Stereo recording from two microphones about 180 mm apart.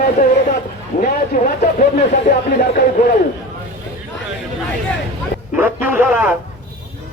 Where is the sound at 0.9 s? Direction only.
45° left (ahead or behind).